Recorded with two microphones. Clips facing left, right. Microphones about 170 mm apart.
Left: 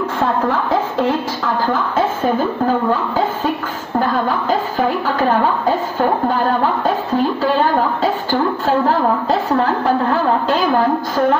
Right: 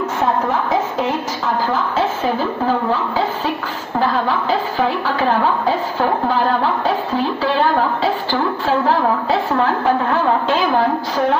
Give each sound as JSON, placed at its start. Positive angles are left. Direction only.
{"t": 1.7, "sound": "speech", "side_deg": 50}
{"t": 2.9, "sound": "a sound", "side_deg": 45}
{"t": 4.0, "sound": "a woman's voice", "side_deg": 45}